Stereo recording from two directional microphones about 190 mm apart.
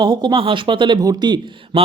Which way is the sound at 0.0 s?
25° right (ahead or behind).